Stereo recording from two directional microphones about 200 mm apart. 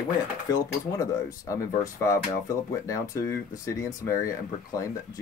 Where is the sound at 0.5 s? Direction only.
20° left (ahead or behind).